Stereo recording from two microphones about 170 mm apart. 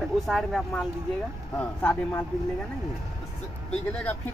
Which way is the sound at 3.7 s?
5° left (ahead or behind).